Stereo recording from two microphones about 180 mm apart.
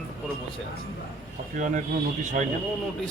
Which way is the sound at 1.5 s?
45° right (ahead or behind).